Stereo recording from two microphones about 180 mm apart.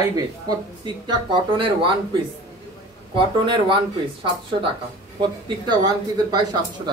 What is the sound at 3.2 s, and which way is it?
A woman's voice, 25° right (ahead or behind).